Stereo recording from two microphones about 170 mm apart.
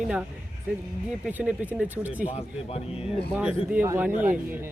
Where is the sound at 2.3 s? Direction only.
35° left (ahead or behind).